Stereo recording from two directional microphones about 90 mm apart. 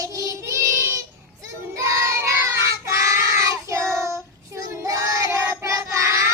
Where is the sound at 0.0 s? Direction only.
35° right (ahead or behind).